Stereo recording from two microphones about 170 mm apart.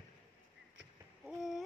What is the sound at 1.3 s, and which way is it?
Speech, centre (ahead or behind).